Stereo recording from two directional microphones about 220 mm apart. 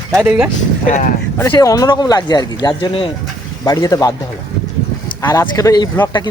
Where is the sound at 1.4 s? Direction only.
15° left (ahead or behind).